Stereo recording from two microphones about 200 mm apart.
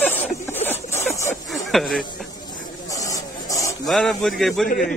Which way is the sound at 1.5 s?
Centre (ahead or behind).